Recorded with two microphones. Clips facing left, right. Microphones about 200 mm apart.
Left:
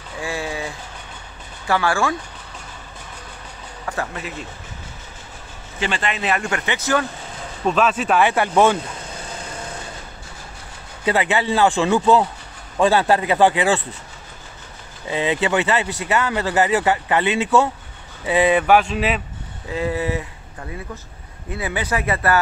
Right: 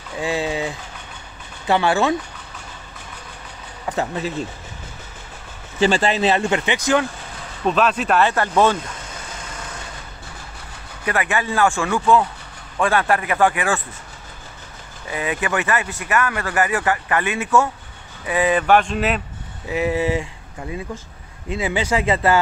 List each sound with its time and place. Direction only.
0.2 s speech: 20° right (ahead or behind)
3.8 s speech: 20° right (ahead or behind)
5.8 s speech: 30° right (ahead or behind); by 7.1 s 15° right (ahead or behind)
7.6 s speech: centre (ahead or behind)
8.2 s speech: 15° left (ahead or behind)
11.1 s speech: 20° left (ahead or behind)
15.0 s speech: 25° left (ahead or behind)
18.6 s speech: 5° left (ahead or behind)
19.7 s speech: 20° right (ahead or behind)
21.5 s speech: 15° right (ahead or behind)